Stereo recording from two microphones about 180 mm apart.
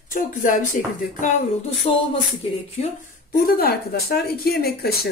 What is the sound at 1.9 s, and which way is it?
Speech, 30° left (ahead or behind).